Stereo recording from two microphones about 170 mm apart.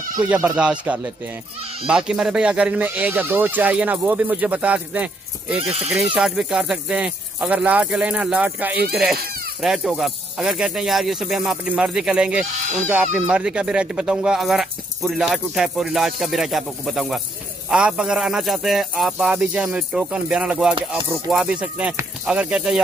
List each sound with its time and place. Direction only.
0.3 s speech: 10° right (ahead or behind)
5.7 s speech: 35° right (ahead or behind)
5.9 s speech: 5° right (ahead or behind)
12.4 s speech: 45° right (ahead or behind)
12.8 s speech: 10° right (ahead or behind)